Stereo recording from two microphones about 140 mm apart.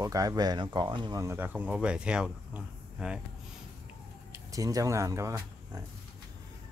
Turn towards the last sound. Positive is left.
turn(degrees=-20)  # may be behind; listen again after turning